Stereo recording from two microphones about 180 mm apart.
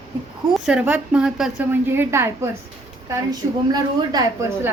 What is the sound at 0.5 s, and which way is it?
A woman's voice, 5° right (ahead or behind).